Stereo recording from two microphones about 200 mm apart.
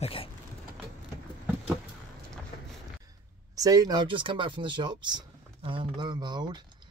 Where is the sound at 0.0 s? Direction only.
30° left (ahead or behind).